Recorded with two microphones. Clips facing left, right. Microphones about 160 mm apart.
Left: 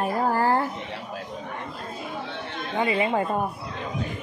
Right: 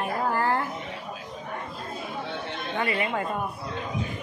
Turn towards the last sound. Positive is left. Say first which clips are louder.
# left 4 dB
turn(degrees=25)  # may be behind; listen again after turning